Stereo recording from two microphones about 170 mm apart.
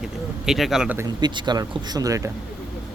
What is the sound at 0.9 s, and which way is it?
A man's voice, 20° right (ahead or behind).